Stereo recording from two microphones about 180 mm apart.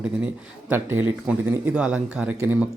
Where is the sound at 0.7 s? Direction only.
10° right (ahead or behind).